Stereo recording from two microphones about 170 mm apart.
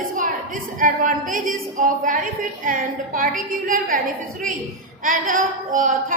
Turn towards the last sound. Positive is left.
turn(degrees=-50)  # may be behind; listen again after turning